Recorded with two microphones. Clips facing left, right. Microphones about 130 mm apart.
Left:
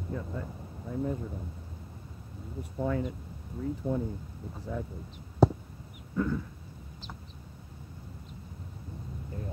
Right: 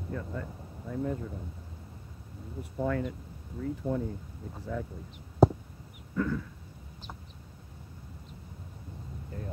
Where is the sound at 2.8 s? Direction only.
25° left (ahead or behind).